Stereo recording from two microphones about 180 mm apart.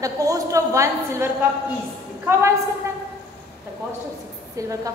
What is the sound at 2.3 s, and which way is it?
Speech, 15° right (ahead or behind).